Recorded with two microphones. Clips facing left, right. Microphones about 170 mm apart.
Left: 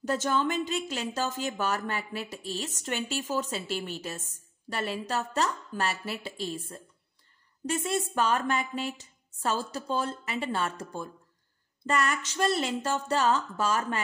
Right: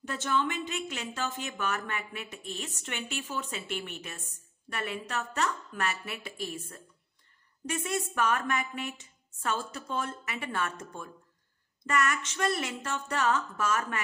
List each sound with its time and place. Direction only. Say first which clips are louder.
0.0 s a woman's voice: left 3 dB; 40° left (ahead or behind)